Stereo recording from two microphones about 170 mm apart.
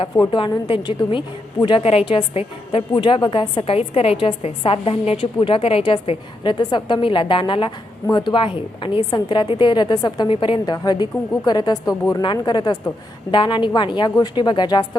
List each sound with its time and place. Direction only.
0.2 s a woman's voice: 30° left (ahead or behind)